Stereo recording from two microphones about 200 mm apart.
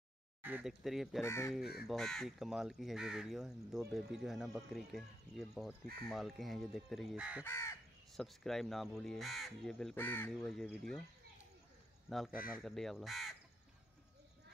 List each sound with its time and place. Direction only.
0.4 s speech: 10° right (ahead or behind)
1.2 s speech: 15° left (ahead or behind)
1.6 s speech: 50° left (ahead or behind)
1.9 s speech: centre (ahead or behind)
7.4 s speech: 10° left (ahead or behind)
8.1 s speech: centre (ahead or behind)
12.3 s speech: 45° left (ahead or behind)
12.6 s speech: centre (ahead or behind)